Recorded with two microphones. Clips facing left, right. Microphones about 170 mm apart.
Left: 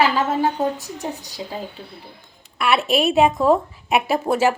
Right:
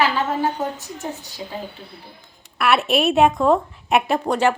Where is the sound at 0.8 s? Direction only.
35° left (ahead or behind).